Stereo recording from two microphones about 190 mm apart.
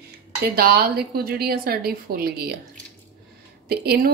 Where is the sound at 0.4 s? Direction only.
55° right (ahead or behind).